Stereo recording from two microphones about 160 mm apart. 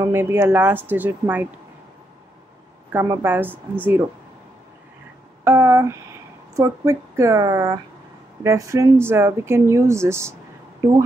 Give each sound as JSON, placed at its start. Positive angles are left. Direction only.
{"t": 0.0, "sound": "speech", "side_deg": -15}
{"t": 2.9, "sound": "speech", "side_deg": -15}
{"t": 5.4, "sound": "speech", "side_deg": -15}